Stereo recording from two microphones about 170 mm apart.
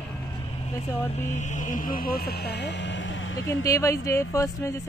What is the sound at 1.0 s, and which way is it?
Speech, 40° left (ahead or behind).